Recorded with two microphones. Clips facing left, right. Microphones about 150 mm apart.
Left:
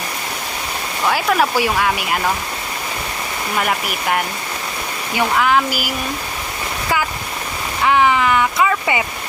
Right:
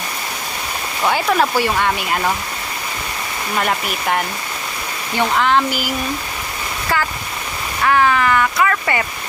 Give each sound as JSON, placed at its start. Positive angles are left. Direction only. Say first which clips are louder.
{"t": 1.1, "sound": "speech", "louder": "even", "side_deg": 5}
{"t": 3.6, "sound": "speech", "louder": "right 1 dB", "side_deg": 5}
{"t": 7.9, "sound": "speech", "louder": "even", "side_deg": 15}